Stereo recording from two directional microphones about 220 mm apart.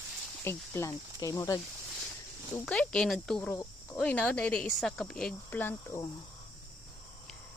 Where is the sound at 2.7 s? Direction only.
5° left (ahead or behind).